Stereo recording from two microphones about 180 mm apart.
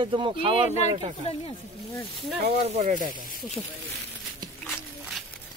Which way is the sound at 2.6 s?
40° right (ahead or behind).